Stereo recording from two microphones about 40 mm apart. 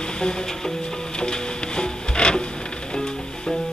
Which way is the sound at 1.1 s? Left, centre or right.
Left.